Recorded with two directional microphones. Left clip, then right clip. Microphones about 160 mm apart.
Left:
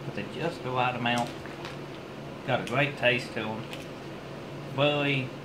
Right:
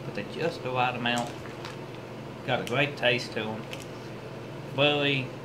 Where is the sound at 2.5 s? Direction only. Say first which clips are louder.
Even; 10° right (ahead or behind).